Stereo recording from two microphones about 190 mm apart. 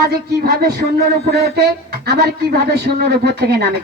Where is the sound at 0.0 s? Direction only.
55° right (ahead or behind).